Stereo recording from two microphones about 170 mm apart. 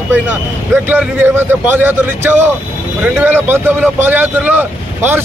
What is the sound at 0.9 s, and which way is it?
Speech, 10° right (ahead or behind).